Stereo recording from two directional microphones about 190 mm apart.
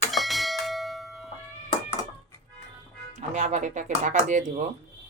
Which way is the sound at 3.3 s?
40° right (ahead or behind).